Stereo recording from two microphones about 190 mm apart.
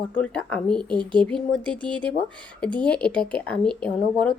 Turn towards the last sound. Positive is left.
turn(degrees=5)  # may be behind; listen again after turning